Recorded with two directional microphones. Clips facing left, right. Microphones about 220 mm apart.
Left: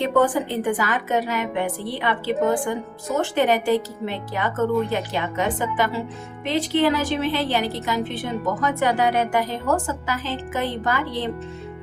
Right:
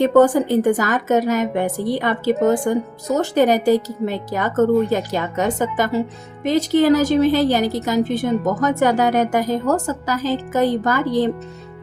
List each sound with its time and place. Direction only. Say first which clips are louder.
0.0 s a woman's voice: right 6 dB; 45° right (ahead or behind)